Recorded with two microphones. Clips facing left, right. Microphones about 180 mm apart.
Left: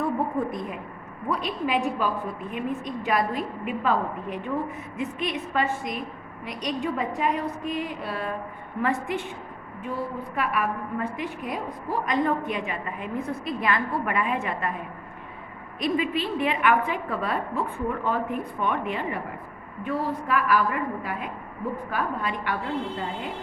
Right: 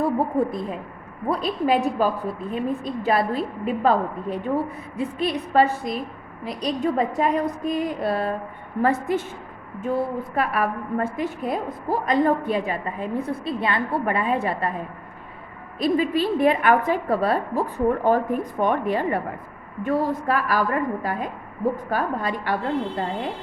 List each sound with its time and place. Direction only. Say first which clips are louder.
0.0 s a woman's voice: right 4 dB; 30° right (ahead or behind)
10.3 s a woman's voice: right 3 dB; 40° right (ahead or behind)
15.8 s a woman's voice: right 5 dB; 35° right (ahead or behind)